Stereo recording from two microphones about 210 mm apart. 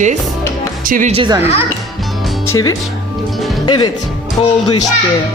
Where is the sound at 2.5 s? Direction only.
15° left (ahead or behind).